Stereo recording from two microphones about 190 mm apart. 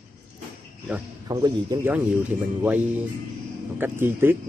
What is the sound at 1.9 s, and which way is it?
Speech, 10° right (ahead or behind).